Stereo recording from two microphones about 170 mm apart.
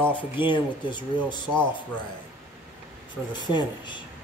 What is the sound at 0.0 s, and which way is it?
Speech, 10° right (ahead or behind).